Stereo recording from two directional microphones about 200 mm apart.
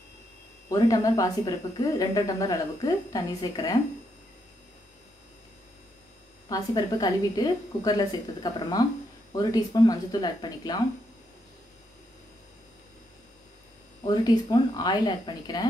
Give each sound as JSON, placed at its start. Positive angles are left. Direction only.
{"t": 0.7, "sound": "a woman's voice", "side_deg": 15}
{"t": 6.5, "sound": "a woman's voice", "side_deg": 20}
{"t": 14.0, "sound": "a woman's voice", "side_deg": 20}